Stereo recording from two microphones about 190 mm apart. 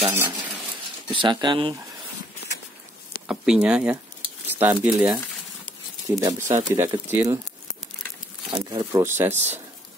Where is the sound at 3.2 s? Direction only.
5° right (ahead or behind).